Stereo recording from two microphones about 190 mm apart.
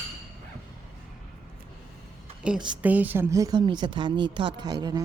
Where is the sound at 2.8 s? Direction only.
10° right (ahead or behind).